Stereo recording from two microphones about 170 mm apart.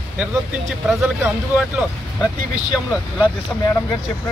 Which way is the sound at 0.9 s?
Centre (ahead or behind).